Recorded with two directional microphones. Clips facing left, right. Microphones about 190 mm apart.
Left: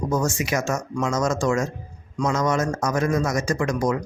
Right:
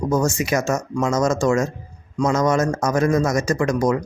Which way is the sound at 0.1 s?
40° right (ahead or behind).